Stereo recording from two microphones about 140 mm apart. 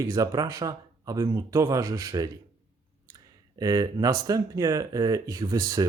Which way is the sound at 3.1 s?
25° right (ahead or behind).